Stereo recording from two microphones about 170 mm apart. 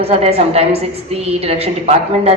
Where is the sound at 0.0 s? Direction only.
35° right (ahead or behind).